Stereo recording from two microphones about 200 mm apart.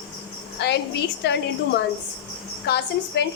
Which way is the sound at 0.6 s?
55° left (ahead or behind).